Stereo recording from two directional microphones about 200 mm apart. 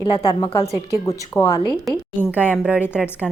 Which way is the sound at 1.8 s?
5° right (ahead or behind).